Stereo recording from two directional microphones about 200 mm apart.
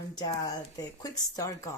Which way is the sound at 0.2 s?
20° left (ahead or behind).